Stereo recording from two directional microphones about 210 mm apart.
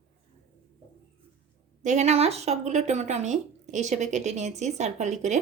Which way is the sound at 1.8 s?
35° right (ahead or behind).